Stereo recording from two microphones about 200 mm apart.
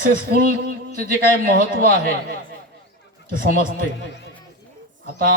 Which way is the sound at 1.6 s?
45° right (ahead or behind).